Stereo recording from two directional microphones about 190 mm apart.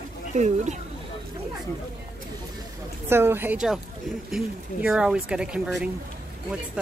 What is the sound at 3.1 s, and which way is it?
A woman's voice, 10° right (ahead or behind).